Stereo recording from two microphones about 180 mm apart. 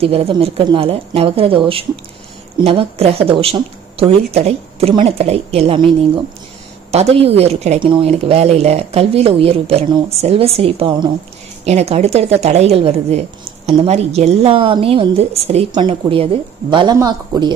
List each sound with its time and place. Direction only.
0.0 s a woman's voice: 30° right (ahead or behind)
6.9 s a woman's voice: 35° right (ahead or behind)